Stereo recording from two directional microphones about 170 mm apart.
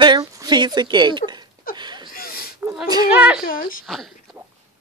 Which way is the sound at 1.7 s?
25° right (ahead or behind).